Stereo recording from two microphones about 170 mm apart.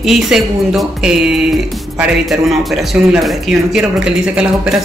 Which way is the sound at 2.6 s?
Centre (ahead or behind).